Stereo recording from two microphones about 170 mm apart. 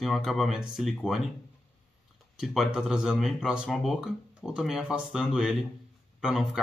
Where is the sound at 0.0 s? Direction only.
Centre (ahead or behind).